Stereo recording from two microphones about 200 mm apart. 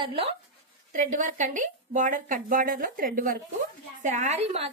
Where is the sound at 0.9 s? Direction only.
40° right (ahead or behind).